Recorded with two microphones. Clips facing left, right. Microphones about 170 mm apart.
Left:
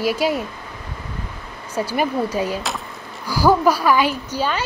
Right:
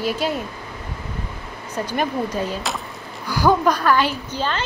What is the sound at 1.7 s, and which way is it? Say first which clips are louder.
A woman's voice: left 2 dB; 10° left (ahead or behind).